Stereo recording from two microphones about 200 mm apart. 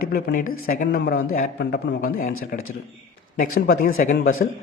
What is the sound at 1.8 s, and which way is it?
Speech, 60° left (ahead or behind).